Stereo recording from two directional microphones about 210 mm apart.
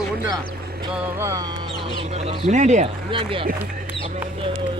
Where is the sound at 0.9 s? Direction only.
10° right (ahead or behind).